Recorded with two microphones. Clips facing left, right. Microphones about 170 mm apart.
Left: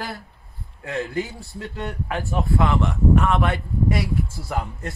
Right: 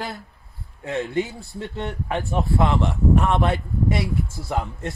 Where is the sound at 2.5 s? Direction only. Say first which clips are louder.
Even; 25° right (ahead or behind).